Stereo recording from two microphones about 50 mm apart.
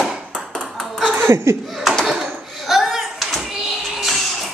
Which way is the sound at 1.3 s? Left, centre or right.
Right.